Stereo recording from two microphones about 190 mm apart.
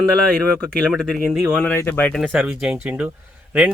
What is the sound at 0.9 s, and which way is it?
Speech, centre (ahead or behind).